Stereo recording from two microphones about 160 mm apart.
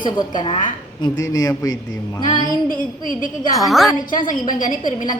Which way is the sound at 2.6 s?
60° left (ahead or behind).